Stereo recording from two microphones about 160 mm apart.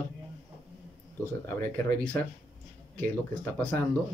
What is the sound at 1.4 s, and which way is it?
Speech, 10° left (ahead or behind).